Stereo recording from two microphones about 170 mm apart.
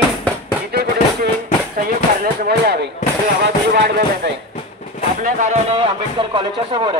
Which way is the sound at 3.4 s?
85° right.